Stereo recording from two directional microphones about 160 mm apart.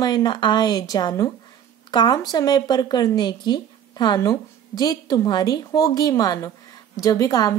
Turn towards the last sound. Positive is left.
turn(degrees=25)  # may be behind; listen again after turning